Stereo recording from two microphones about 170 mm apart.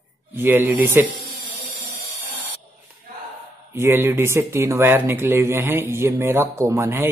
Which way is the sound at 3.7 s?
15° right (ahead or behind).